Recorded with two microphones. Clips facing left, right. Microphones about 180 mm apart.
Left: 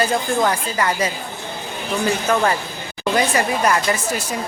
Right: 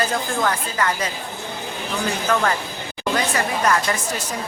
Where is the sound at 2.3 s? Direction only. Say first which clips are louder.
Even; 10° left (ahead or behind).